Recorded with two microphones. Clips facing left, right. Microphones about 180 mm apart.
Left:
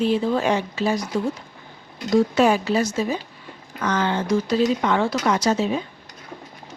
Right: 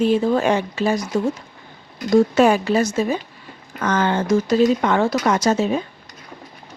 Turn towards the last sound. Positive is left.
turn(degrees=-45)  # may be behind; listen again after turning